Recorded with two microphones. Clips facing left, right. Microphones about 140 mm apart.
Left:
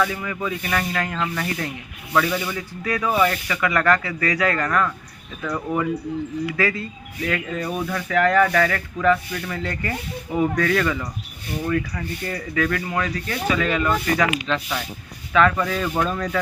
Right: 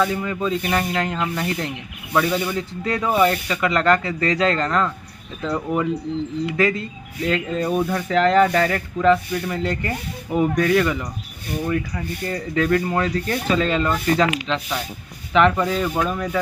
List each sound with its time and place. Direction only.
0.0 s speech: 25° right (ahead or behind)
12.3 s speech: 25° right (ahead or behind)
12.8 s speech: 35° right (ahead or behind); by 16.4 s 10° right (ahead or behind)